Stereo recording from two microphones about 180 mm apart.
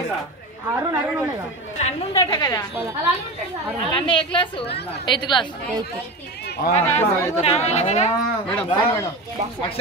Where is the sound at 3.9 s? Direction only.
30° left (ahead or behind).